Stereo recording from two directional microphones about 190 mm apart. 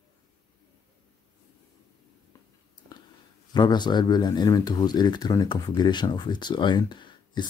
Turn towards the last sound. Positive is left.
turn(degrees=25)  # may be behind; listen again after turning